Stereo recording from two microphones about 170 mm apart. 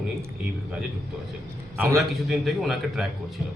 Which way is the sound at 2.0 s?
Centre (ahead or behind).